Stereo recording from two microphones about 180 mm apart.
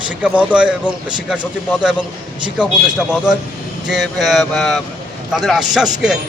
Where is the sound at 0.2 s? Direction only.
5° right (ahead or behind).